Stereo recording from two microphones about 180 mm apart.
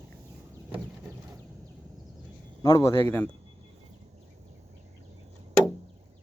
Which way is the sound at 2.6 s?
20° left (ahead or behind).